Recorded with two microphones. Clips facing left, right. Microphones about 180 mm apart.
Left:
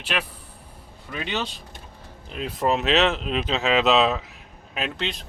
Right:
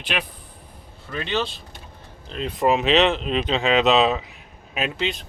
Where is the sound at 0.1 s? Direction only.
Centre (ahead or behind).